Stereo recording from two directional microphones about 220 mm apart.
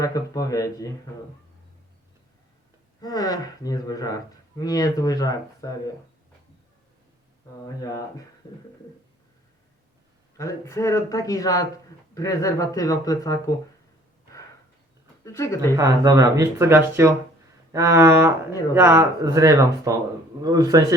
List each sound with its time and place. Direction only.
0.0 s speech: 15° left (ahead or behind)
3.0 s speech: 15° left (ahead or behind)
7.8 s speech: 15° left (ahead or behind)
10.3 s speech: 15° left (ahead or behind)
15.2 s speech: 15° left (ahead or behind)
15.7 s speech: 15° right (ahead or behind)